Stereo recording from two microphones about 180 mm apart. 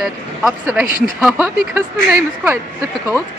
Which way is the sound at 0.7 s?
10° right (ahead or behind).